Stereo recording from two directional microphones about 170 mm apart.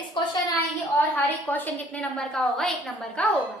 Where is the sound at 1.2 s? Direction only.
10° left (ahead or behind).